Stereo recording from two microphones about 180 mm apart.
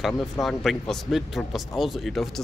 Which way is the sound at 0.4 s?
Centre (ahead or behind).